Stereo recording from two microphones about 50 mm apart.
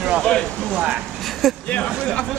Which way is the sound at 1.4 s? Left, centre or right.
Centre.